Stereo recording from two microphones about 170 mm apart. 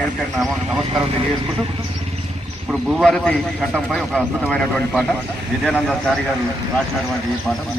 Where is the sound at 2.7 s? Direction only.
Centre (ahead or behind).